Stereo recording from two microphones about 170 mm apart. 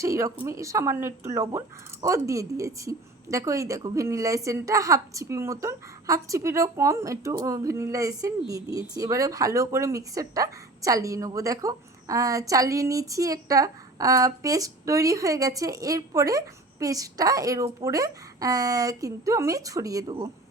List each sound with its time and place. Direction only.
0.0 s speech: 20° right (ahead or behind)